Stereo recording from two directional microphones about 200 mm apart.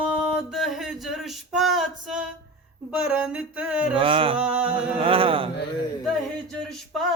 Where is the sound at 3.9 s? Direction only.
25° right (ahead or behind).